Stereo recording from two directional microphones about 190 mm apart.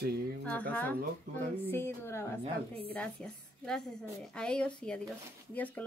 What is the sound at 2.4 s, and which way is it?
Speech, 30° right (ahead or behind).